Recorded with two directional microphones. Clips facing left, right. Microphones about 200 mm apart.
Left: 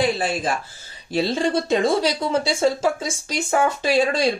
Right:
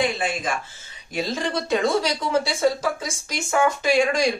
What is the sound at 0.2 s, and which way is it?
Speech, 35° left (ahead or behind).